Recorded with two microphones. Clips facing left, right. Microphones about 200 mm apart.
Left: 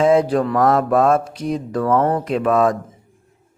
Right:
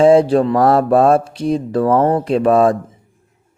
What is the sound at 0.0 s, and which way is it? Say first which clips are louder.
Speech: right 5 dB; 30° right (ahead or behind).